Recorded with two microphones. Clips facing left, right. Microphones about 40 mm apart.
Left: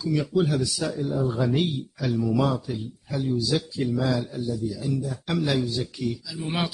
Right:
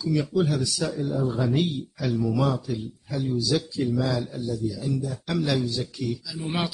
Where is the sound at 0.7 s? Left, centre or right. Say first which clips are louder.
Even; centre.